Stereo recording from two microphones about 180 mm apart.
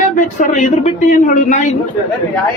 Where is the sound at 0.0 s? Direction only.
45° left (ahead or behind).